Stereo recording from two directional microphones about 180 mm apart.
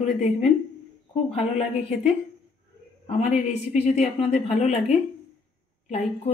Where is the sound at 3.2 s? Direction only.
40° left (ahead or behind).